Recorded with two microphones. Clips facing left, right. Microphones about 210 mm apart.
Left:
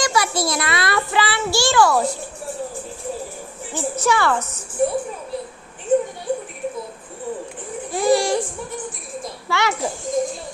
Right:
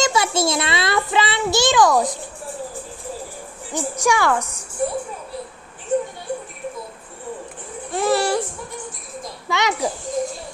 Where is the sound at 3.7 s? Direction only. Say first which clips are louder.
Even; 15° right (ahead or behind).